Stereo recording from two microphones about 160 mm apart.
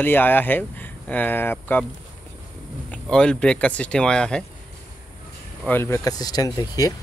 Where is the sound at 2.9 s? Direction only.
5° left (ahead or behind).